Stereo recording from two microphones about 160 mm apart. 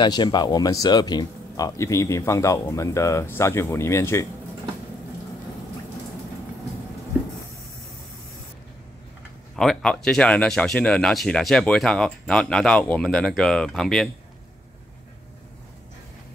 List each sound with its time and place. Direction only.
0.0 s speech: 25° left (ahead or behind)
9.6 s speech: 5° left (ahead or behind)